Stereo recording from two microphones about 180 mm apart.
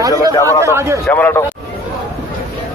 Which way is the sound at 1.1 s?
10° left (ahead or behind).